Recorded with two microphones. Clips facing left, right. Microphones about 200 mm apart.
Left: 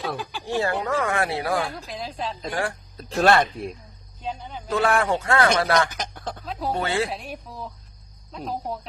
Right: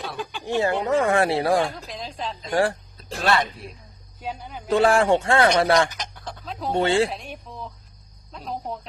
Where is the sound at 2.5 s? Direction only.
35° right (ahead or behind).